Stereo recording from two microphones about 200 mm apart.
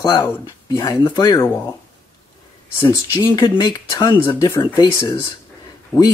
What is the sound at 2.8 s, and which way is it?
Speech, 20° left (ahead or behind).